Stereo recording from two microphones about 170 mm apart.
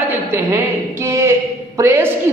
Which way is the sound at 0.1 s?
15° right (ahead or behind).